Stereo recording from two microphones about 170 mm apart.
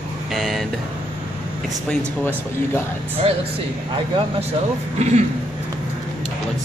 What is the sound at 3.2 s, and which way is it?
Speech, 35° right (ahead or behind).